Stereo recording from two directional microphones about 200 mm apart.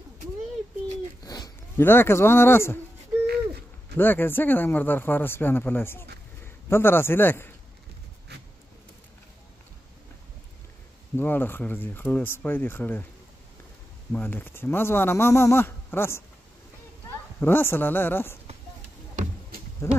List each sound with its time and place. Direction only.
1.2 s speech: 20° left (ahead or behind)
3.9 s a man's voice: 10° left (ahead or behind)
8.3 s a sound: 55° right (ahead or behind)
11.1 s speech: 10° left (ahead or behind)
14.1 s speech: 10° left (ahead or behind)
17.4 s speech: 10° left (ahead or behind)
19.8 s speech: 15° left (ahead or behind)